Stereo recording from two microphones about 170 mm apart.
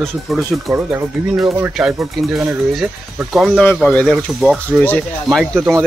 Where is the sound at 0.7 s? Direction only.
15° right (ahead or behind).